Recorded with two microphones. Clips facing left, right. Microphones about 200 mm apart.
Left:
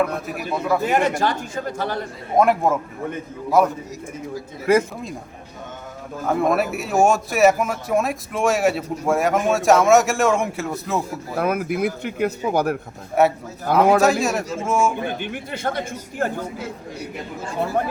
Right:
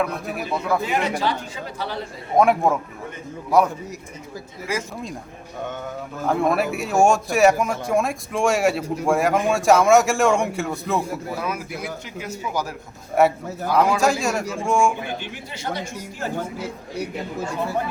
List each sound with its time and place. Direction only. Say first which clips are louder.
0.9 s speech: left 3 dB; 50° left (ahead or behind)
2.3 s a man's voice: even; centre (ahead or behind)
4.7 s speech: left 11 dB; 60° left (ahead or behind)
6.2 s a man's voice: left 1 dB; centre (ahead or behind)
11.3 s speech: left 7 dB; 55° left (ahead or behind)
13.2 s a man's voice: even; centre (ahead or behind)
13.7 s speech: left 2 dB; 55° left (ahead or behind)
14.0 s a man's voice: left 2 dB; centre (ahead or behind)
15.2 s speech: left 6 dB; 55° left (ahead or behind)